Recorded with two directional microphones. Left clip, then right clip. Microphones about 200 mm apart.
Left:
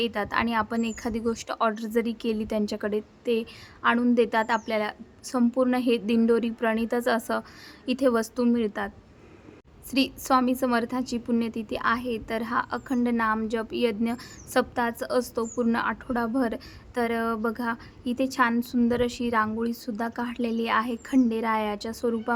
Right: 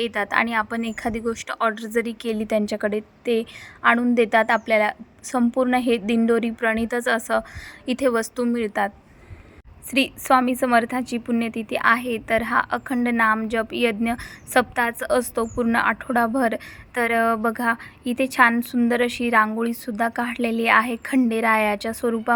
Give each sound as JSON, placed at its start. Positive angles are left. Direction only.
{"t": 0.0, "sound": "a woman's voice", "side_deg": -15}
{"t": 10.0, "sound": "a woman's voice", "side_deg": -10}